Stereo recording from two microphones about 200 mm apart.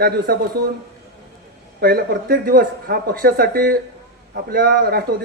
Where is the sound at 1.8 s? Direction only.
50° right (ahead or behind).